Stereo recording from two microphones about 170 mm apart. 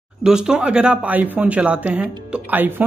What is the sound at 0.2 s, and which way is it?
Speech, 5° right (ahead or behind).